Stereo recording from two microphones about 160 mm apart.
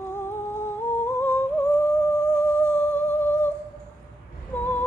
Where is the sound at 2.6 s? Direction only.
10° left (ahead or behind).